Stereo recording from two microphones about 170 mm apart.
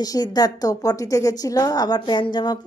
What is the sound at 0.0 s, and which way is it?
A woman's voice, 25° left (ahead or behind).